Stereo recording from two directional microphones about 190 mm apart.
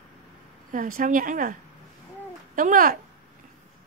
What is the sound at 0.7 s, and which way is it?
Speech, 45° right (ahead or behind).